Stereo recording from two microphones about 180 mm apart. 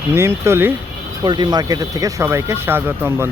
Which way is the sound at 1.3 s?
25° right (ahead or behind).